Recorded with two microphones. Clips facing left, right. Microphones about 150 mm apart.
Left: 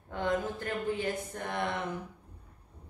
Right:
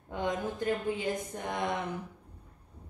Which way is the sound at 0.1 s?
15° right (ahead or behind).